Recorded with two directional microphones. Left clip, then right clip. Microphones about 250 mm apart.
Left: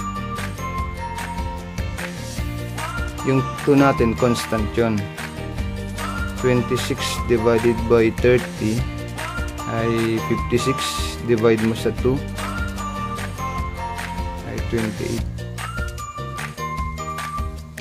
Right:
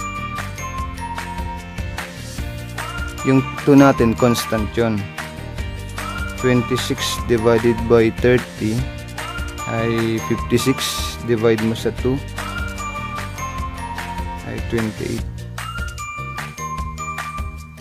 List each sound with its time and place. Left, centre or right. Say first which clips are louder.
3.3 s speech: right 3 dB; centre
6.4 s speech: right 1 dB; centre
14.5 s speech: right 1 dB; centre